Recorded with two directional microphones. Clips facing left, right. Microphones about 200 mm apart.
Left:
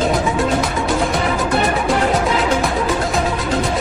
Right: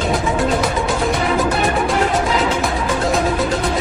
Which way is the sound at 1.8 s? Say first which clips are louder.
Left 1 dB; centre (ahead or behind).